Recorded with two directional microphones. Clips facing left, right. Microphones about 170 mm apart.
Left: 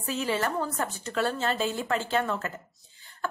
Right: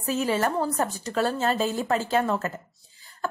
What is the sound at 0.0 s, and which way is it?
A woman's voice, 40° right (ahead or behind).